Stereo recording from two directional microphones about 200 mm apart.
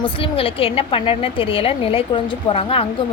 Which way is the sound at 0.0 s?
25° left (ahead or behind).